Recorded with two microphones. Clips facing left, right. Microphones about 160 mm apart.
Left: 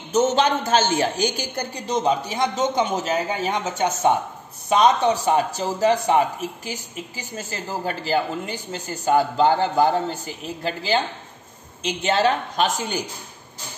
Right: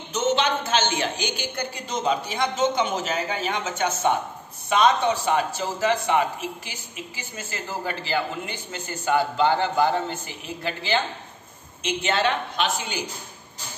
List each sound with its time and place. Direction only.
0.1 s a woman's voice: 45° left (ahead or behind)